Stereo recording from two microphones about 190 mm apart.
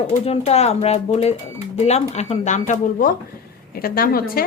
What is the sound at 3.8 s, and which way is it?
Speech, 50° left (ahead or behind).